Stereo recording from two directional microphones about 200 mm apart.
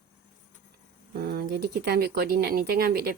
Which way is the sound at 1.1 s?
50° right (ahead or behind).